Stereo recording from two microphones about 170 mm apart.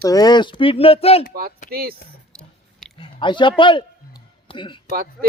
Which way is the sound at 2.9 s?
30° left (ahead or behind).